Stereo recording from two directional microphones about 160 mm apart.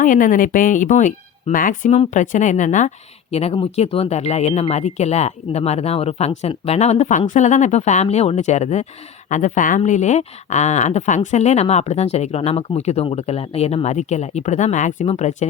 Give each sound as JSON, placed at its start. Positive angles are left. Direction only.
{"t": 0.0, "sound": "speech", "side_deg": 55}
{"t": 3.3, "sound": "speech", "side_deg": 40}